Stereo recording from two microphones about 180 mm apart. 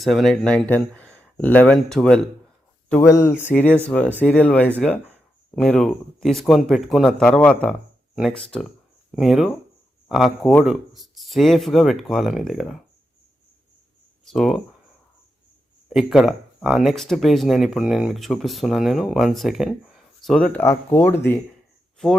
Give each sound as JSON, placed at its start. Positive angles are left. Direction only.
{"t": 0.0, "sound": "speech", "side_deg": 0}
{"t": 2.9, "sound": "speech", "side_deg": 15}
{"t": 14.3, "sound": "speech", "side_deg": 0}
{"t": 15.9, "sound": "speech", "side_deg": 0}